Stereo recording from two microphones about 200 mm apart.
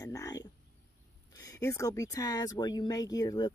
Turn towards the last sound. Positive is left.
turn(degrees=20)  # may be behind; listen again after turning